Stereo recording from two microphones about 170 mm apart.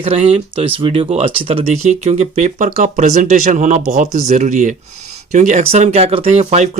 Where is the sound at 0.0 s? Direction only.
35° right (ahead or behind).